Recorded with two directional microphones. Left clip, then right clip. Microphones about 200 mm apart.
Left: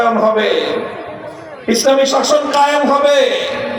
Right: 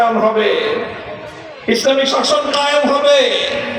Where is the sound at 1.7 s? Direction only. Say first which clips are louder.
Left 2 dB; 65° left (ahead or behind).